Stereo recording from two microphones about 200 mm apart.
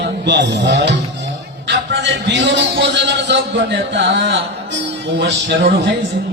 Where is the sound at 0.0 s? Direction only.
60° right (ahead or behind).